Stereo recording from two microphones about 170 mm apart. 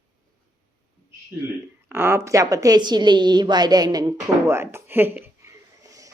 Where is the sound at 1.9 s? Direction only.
15° right (ahead or behind).